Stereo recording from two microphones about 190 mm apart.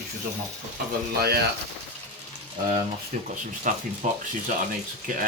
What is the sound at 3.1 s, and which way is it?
Speech, 40° right (ahead or behind).